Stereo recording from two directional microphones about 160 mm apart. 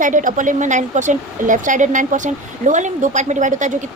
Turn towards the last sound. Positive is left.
turn(degrees=-50)  # may be behind; listen again after turning